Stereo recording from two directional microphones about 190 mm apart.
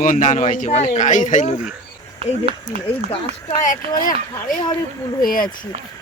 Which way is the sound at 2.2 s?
30° right (ahead or behind).